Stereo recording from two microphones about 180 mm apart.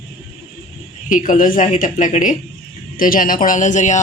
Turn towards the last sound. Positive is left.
turn(degrees=40)  # may be behind; listen again after turning